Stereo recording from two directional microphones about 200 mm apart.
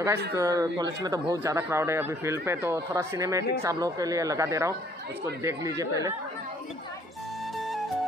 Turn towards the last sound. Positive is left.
turn(degrees=0)  # may be behind; listen again after turning